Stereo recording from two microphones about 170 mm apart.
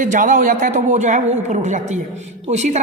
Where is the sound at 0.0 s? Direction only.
50° right (ahead or behind).